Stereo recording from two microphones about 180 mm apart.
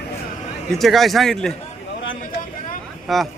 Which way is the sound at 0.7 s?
Centre (ahead or behind).